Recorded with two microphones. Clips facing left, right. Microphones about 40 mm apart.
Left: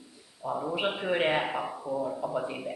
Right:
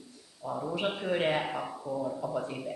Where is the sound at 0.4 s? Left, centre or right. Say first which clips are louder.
Left 2 dB; centre.